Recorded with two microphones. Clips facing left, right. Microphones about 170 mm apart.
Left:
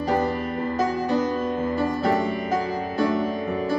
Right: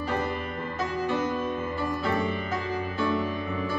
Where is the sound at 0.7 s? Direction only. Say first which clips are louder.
Left 5 dB; 40° left (ahead or behind).